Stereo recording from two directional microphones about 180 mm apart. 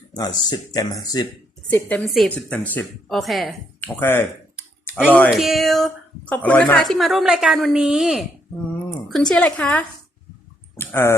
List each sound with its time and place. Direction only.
0.1 s speech: 20° left (ahead or behind)
1.7 s speech: 10° left (ahead or behind)
4.0 s speech: 10° left (ahead or behind)
5.3 s speech: centre (ahead or behind)
10.8 s a sound: 15° left (ahead or behind)